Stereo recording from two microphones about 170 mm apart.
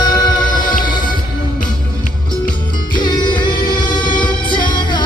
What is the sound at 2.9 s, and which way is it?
Music, 25° left (ahead or behind).